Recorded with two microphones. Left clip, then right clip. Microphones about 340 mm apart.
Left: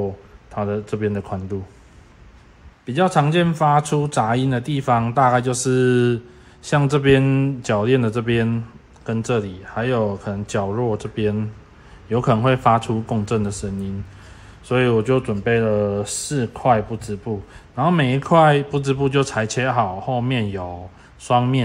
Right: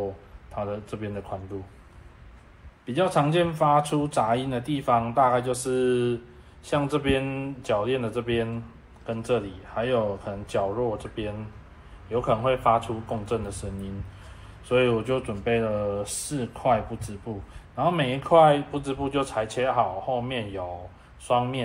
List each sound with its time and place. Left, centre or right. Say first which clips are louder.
0.6 s speech: left 8 dB; left
2.9 s speech: left 5 dB; left
14.7 s speech: left 5 dB; left